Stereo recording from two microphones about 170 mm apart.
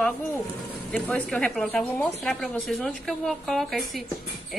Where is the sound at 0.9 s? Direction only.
5° left (ahead or behind).